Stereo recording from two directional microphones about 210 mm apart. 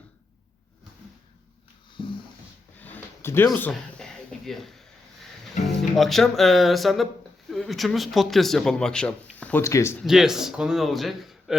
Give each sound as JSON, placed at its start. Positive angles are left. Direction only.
{"t": 2.8, "sound": "a sound", "side_deg": 10}
{"t": 5.6, "sound": "speech", "side_deg": 0}
{"t": 10.0, "sound": "speech", "side_deg": 0}